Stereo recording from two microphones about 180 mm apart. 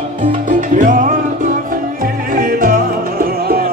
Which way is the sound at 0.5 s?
45° right (ahead or behind).